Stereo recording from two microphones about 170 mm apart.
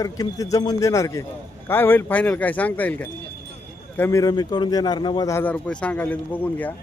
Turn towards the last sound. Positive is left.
turn(degrees=10)  # may be behind; listen again after turning